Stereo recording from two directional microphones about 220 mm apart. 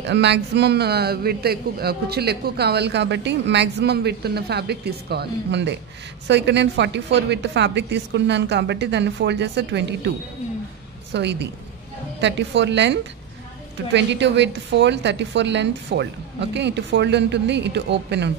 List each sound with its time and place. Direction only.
0.0 s a man's voice: 50° right (ahead or behind)
11.1 s a man's voice: 50° right (ahead or behind)